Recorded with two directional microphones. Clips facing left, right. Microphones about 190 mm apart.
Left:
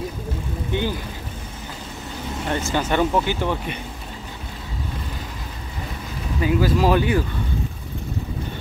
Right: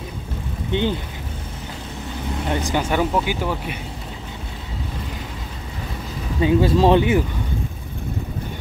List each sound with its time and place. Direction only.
0.7 s speech: 20° right (ahead or behind)
2.4 s speech: 15° right (ahead or behind)
6.4 s speech: 25° right (ahead or behind)